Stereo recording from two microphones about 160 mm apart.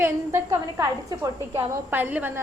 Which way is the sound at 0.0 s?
15° right (ahead or behind).